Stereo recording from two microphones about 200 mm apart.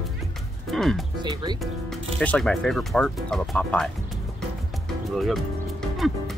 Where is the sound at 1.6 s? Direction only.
Centre (ahead or behind).